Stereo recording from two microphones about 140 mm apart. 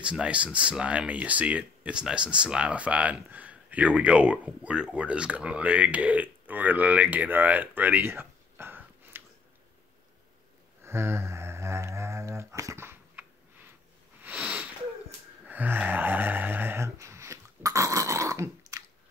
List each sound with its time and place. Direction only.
0.0 s speech: 10° right (ahead or behind)
10.8 s a sound: 15° right (ahead or behind)
18.7 s squish: 25° right (ahead or behind)